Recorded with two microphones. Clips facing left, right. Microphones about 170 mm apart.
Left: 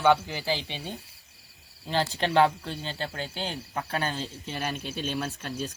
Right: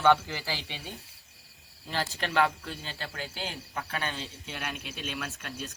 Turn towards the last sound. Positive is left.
turn(degrees=35)  # may be behind; listen again after turning